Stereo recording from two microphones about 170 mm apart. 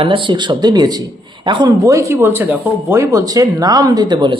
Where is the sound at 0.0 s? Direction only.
30° right (ahead or behind).